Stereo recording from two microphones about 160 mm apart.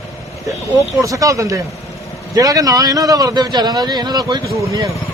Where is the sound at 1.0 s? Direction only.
20° right (ahead or behind).